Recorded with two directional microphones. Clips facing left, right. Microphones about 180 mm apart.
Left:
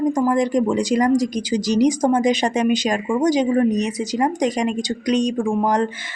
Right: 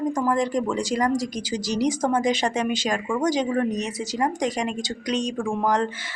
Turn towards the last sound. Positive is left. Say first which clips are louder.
# left 4 dB
turn(degrees=15)  # may be behind; listen again after turning